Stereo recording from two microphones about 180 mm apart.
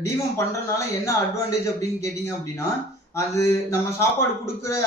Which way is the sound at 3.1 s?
15° left (ahead or behind).